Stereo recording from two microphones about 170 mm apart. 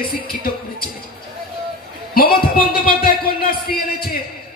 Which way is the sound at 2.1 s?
60° left (ahead or behind).